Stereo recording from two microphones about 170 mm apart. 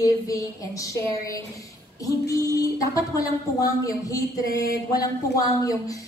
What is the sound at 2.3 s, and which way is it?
A woman's voice, 20° left (ahead or behind).